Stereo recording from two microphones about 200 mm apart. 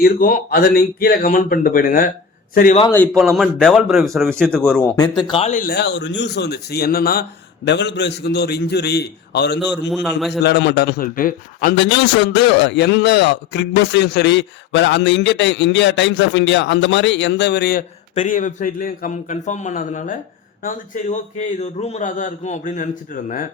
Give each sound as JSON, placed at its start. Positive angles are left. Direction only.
{"t": 0.0, "sound": "speech", "side_deg": 45}
{"t": 3.1, "sound": "a man's voice", "side_deg": 0}
{"t": 4.9, "sound": "a man's voice", "side_deg": 25}
{"t": 9.9, "sound": "a man's voice", "side_deg": 0}
{"t": 10.4, "sound": "speech", "side_deg": 60}
{"t": 11.8, "sound": "a man's voice", "side_deg": 60}
{"t": 18.1, "sound": "a man's voice", "side_deg": 40}